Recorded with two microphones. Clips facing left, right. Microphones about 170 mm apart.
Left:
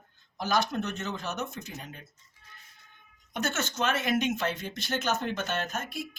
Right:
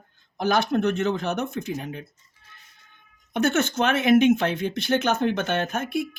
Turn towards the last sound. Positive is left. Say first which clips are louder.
# right 9 dB
turn(degrees=-60)  # may be behind; listen again after turning